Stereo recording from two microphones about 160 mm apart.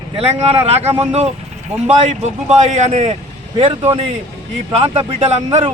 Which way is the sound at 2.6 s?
45° right (ahead or behind).